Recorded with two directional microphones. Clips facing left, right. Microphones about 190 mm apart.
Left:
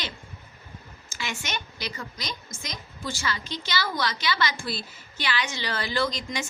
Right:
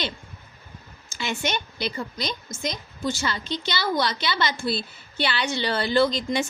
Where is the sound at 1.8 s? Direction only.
25° right (ahead or behind).